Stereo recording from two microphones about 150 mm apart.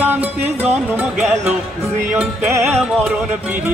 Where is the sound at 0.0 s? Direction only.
10° right (ahead or behind).